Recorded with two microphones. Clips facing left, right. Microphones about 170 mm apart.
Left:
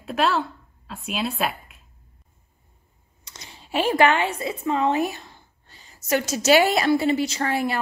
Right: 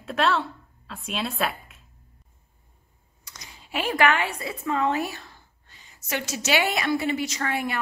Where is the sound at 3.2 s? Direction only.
25° left (ahead or behind).